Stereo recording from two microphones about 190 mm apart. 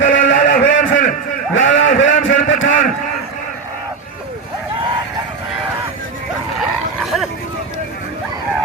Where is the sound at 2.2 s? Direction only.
90° left.